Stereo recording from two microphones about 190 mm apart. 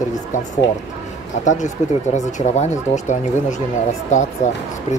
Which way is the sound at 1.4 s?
40° left (ahead or behind).